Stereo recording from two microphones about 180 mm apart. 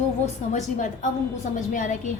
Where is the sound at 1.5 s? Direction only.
45° left (ahead or behind).